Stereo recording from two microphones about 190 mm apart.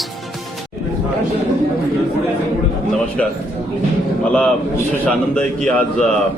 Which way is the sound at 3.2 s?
5° left (ahead or behind).